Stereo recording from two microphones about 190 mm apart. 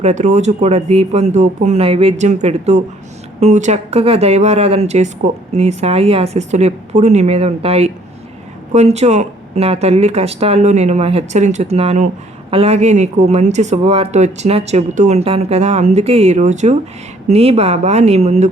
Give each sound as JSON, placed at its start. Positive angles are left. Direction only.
{"t": 0.0, "sound": "speech", "side_deg": -40}